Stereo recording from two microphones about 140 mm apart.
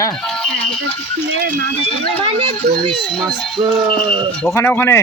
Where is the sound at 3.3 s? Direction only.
Centre (ahead or behind).